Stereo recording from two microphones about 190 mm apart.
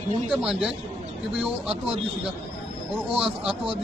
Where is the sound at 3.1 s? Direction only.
30° right (ahead or behind).